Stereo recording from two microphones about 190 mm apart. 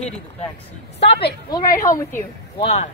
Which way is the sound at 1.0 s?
60° left (ahead or behind).